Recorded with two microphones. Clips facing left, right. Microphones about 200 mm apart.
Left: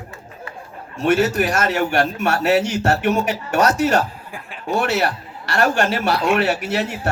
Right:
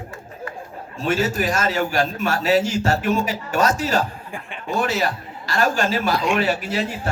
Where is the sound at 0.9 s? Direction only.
70° left (ahead or behind).